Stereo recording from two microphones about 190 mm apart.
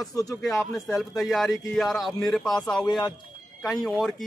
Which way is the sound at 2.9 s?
20° left (ahead or behind).